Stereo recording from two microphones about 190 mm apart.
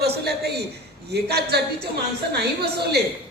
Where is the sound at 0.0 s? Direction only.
60° right (ahead or behind).